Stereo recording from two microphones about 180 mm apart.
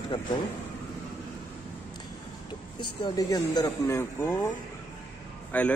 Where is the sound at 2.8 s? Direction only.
25° left (ahead or behind).